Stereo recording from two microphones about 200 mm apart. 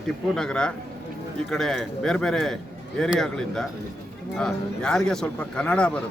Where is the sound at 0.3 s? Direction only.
5° left (ahead or behind).